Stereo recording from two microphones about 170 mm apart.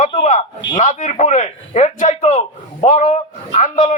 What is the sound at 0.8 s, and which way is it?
A man's voice, 45° left (ahead or behind).